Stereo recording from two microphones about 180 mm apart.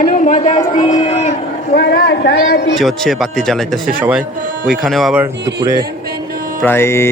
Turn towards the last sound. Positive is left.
turn(degrees=15)  # may be behind; listen again after turning